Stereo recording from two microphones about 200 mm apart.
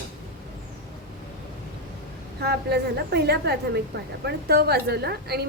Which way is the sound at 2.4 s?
55° right (ahead or behind).